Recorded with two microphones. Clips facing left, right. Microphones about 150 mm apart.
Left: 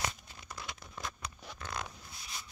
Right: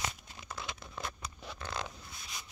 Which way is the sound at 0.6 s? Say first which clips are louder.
Right 3 dB; 25° right (ahead or behind).